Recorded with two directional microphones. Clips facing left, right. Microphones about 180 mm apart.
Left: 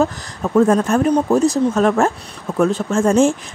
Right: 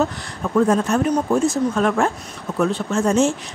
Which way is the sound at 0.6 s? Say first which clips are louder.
Left 3 dB; 50° left (ahead or behind).